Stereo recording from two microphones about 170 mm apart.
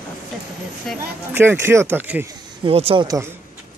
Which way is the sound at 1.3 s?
15° right (ahead or behind).